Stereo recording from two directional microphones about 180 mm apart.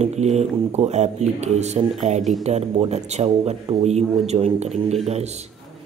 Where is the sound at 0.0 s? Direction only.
40° right (ahead or behind).